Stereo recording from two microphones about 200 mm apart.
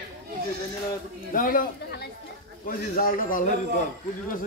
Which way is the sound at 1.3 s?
45° left (ahead or behind).